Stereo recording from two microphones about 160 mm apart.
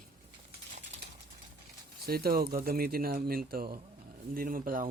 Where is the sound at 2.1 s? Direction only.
70° right (ahead or behind).